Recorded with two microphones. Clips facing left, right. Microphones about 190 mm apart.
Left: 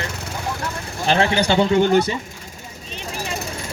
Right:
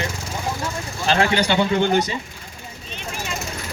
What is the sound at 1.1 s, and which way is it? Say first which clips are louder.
Speech: left 1 dB; 25° left (ahead or behind).